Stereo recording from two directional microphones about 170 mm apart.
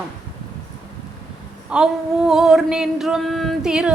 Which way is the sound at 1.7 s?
5° right (ahead or behind).